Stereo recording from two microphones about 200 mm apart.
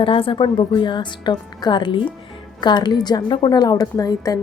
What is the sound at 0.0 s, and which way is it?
A woman's voice, 25° left (ahead or behind).